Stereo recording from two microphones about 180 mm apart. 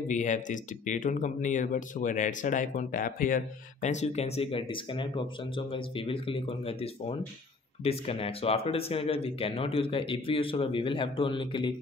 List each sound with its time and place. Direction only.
0.1 s speech: 45° left (ahead or behind); by 11.7 s 25° left (ahead or behind)